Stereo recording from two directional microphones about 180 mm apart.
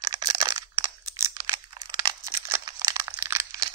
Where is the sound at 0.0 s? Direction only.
20° right (ahead or behind).